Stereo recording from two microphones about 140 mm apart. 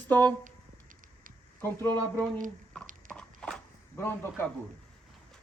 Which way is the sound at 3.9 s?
15° left (ahead or behind).